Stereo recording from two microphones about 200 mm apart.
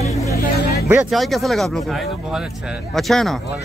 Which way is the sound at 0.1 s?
15° left (ahead or behind).